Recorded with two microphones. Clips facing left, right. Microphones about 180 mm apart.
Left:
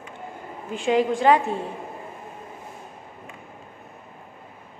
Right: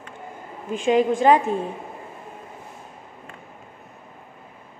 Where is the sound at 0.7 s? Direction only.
20° right (ahead or behind).